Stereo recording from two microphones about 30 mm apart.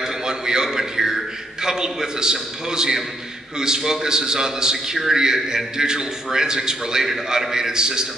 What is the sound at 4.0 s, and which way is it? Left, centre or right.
A man's voice, right.